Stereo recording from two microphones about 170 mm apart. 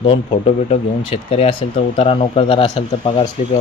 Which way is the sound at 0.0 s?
30° left (ahead or behind).